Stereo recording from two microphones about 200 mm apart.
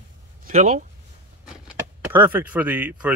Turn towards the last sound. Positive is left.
turn(degrees=-10)  # may be behind; listen again after turning